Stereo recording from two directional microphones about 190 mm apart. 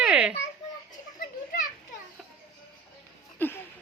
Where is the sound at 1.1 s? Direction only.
45° left (ahead or behind).